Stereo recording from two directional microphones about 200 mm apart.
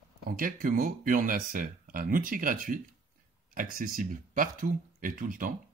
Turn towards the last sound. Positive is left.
turn(degrees=-45)  # may be behind; listen again after turning